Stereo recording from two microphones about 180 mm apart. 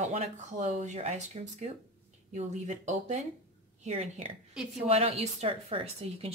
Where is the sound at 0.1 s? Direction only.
40° right (ahead or behind).